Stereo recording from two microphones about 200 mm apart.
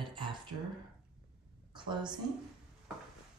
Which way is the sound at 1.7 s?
25° right (ahead or behind).